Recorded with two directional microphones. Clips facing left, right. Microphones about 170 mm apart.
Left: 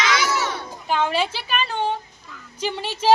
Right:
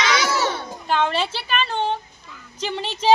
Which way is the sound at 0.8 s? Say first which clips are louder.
Even; 10° left (ahead or behind).